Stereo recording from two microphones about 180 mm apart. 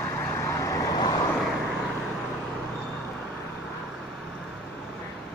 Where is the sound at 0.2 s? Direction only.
15° left (ahead or behind).